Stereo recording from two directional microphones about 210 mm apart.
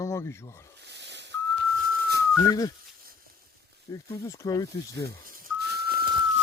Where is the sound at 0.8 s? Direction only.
55° right (ahead or behind).